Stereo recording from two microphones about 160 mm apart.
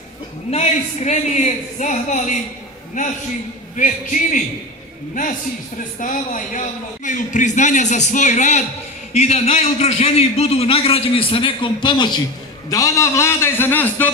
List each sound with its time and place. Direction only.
0.5 s a woman's voice: 45° left (ahead or behind)
3.7 s a woman's voice: 50° left (ahead or behind)
5.9 s a woman's voice: 55° left (ahead or behind); by 14.1 s 10° left (ahead or behind)